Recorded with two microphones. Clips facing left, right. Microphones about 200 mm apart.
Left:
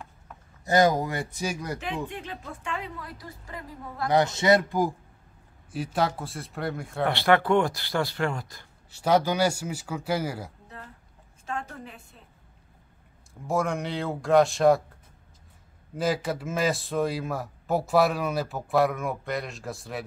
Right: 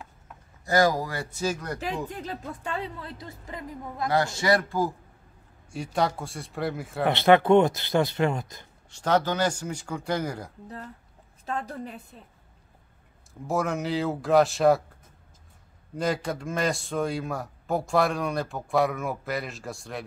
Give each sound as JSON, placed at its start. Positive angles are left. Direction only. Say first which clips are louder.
{"t": 0.7, "sound": "speech", "louder": "left 1 dB", "side_deg": 20}
{"t": 2.0, "sound": "speech", "louder": "right 2 dB", "side_deg": -40}
{"t": 4.1, "sound": "speech", "louder": "left 3 dB", "side_deg": 20}
{"t": 5.7, "sound": "a man's voice", "louder": "even", "side_deg": 5}
{"t": 7.1, "sound": "speech", "louder": "right 4 dB", "side_deg": -20}
{"t": 8.9, "sound": "speech", "louder": "left 2 dB", "side_deg": 10}
{"t": 11.4, "sound": "a woman's voice", "louder": "right 3 dB", "side_deg": -35}
{"t": 13.5, "sound": "a man's voice", "louder": "even", "side_deg": 0}
{"t": 16.0, "sound": "a man's voice", "louder": "left 1 dB", "side_deg": 5}